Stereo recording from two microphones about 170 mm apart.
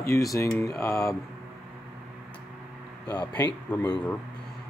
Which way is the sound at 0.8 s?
20° left (ahead or behind).